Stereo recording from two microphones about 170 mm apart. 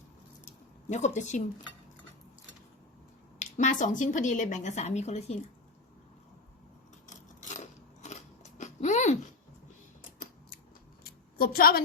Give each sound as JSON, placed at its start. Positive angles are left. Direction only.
{"t": 0.4, "sound": "a sound", "side_deg": 45}
{"t": 3.3, "sound": "a woman's voice", "side_deg": 45}
{"t": 7.1, "sound": "biting", "side_deg": 45}
{"t": 11.3, "sound": "a woman's voice", "side_deg": 60}